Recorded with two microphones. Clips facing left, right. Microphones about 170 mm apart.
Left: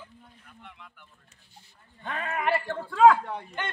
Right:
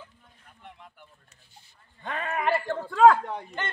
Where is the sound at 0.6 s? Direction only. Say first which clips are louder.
Right 3 dB; 40° right (ahead or behind).